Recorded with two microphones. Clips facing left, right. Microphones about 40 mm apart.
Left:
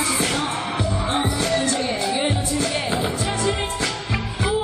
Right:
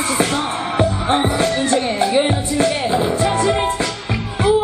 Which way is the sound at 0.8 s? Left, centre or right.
Right.